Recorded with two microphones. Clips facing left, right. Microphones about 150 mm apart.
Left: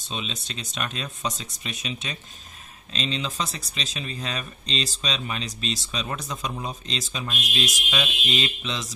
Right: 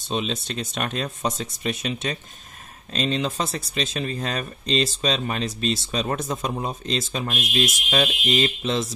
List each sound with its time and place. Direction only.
0.0 s speech: 55° right (ahead or behind)